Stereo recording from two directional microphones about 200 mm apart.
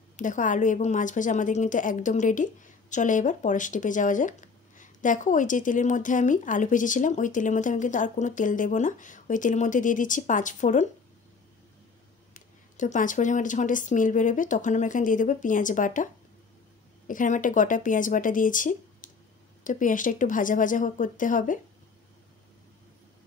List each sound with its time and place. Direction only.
0.1 s a woman's voice: 40° left (ahead or behind)
12.4 s a woman's voice: 40° left (ahead or behind)
17.1 s a woman's voice: 40° left (ahead or behind)